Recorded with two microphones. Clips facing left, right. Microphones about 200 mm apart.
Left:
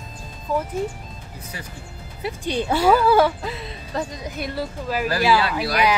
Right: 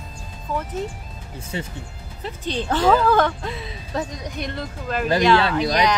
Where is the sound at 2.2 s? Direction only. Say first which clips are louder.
Left 2 dB; 10° left (ahead or behind).